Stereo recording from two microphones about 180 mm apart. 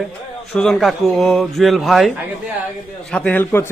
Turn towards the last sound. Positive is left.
turn(degrees=10)  # may be behind; listen again after turning